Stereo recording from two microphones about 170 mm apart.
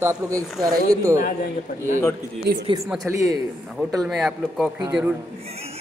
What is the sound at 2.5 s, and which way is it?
Speech, 80° right.